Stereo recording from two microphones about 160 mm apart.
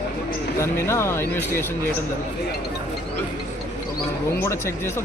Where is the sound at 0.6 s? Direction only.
15° left (ahead or behind).